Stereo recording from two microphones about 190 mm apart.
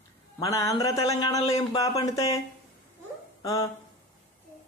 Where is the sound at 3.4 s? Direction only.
15° left (ahead or behind).